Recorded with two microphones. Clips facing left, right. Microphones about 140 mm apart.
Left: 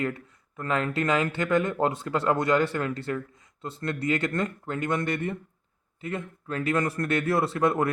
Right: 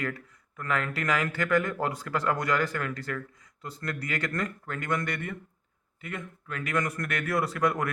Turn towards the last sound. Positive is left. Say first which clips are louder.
# left 3 dB
turn(degrees=25)  # may be behind; listen again after turning